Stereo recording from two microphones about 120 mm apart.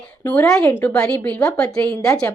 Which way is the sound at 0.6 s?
20° left (ahead or behind).